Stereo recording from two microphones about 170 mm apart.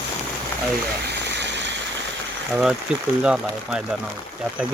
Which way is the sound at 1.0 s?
85° right.